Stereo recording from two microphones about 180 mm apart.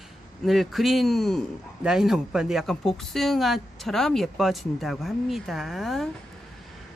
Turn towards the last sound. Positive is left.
turn(degrees=0)  # may be behind; listen again after turning